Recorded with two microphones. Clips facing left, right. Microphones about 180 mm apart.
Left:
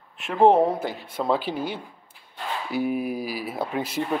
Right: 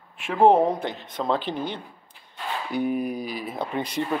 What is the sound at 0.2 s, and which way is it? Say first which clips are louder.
Speech: even; centre (ahead or behind).